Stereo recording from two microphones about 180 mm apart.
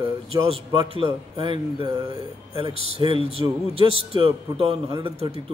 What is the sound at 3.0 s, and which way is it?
A man's voice, 30° right (ahead or behind).